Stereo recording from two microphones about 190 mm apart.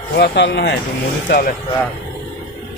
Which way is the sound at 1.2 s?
45° left (ahead or behind).